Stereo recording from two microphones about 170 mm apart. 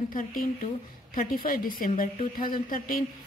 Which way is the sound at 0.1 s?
50° left (ahead or behind).